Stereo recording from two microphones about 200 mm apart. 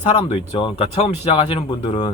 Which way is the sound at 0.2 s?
25° left (ahead or behind).